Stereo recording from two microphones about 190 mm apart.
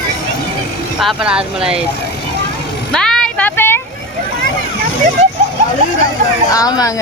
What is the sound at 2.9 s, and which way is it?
Vehicle, 5° left (ahead or behind).